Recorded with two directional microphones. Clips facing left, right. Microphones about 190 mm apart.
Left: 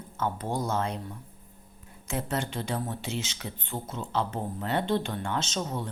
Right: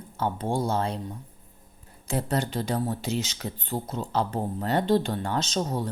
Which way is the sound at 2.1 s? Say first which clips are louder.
Right 4 dB; 35° right (ahead or behind).